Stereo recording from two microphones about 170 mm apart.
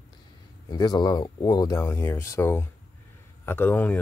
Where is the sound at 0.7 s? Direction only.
25° left (ahead or behind).